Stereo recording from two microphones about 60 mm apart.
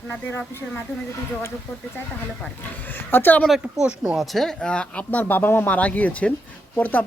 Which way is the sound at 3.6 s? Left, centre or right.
Right.